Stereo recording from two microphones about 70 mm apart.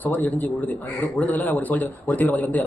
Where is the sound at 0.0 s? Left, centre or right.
Left.